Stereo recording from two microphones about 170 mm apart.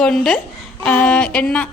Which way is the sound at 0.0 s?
5° left (ahead or behind).